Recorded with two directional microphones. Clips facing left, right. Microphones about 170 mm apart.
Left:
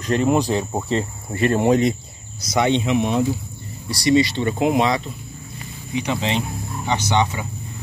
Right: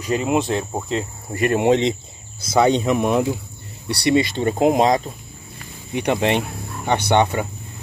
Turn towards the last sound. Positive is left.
turn(degrees=-55)  # may be behind; listen again after turning